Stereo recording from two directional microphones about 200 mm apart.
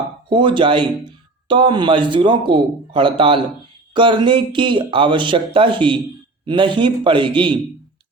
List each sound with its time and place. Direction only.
0.3 s a man's voice: 25° right (ahead or behind)